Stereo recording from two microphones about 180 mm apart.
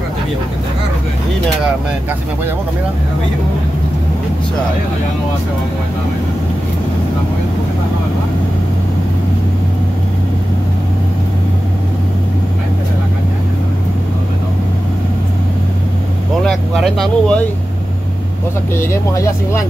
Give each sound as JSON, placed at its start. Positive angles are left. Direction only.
{"t": 16.4, "sound": "speech", "side_deg": 0}
{"t": 18.8, "sound": "speech", "side_deg": 15}